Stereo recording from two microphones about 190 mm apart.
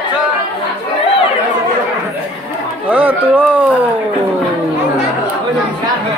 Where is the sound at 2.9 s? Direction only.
5° right (ahead or behind).